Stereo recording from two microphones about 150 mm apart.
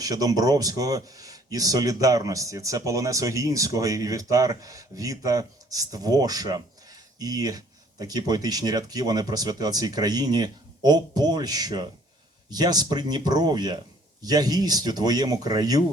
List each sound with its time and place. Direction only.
0.0 s speech: 25° right (ahead or behind)